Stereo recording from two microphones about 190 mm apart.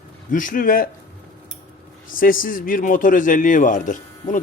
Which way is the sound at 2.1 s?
45° left (ahead or behind).